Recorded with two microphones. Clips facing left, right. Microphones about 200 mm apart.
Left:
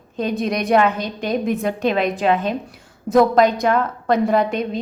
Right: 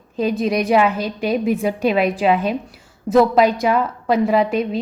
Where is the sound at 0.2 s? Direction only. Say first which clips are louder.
Right 3 dB; 5° right (ahead or behind).